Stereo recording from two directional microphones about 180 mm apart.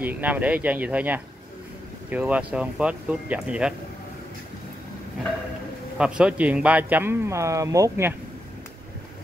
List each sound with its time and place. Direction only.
0.0 s speech: 10° right (ahead or behind)
5.9 s speech: 5° right (ahead or behind)